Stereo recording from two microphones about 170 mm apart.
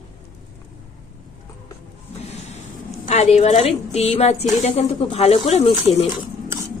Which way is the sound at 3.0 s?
40° left (ahead or behind).